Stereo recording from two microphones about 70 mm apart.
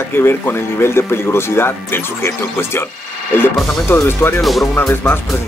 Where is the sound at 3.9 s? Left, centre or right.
Left.